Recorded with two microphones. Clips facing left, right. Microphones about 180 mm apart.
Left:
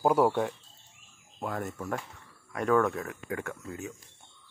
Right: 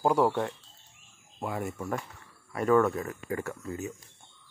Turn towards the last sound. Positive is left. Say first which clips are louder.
# right 3 dB
turn(degrees=0)  # may be behind; listen again after turning